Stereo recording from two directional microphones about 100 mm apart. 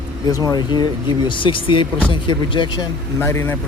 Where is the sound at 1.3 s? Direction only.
60° left (ahead or behind).